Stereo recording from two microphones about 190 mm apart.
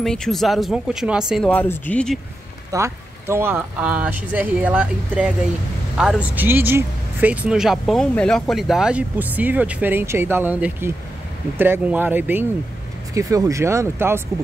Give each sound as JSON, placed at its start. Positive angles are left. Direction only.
{"t": 0.0, "sound": "speech", "side_deg": 5}
{"t": 1.5, "sound": "speech", "side_deg": 10}
{"t": 2.7, "sound": "speech", "side_deg": -15}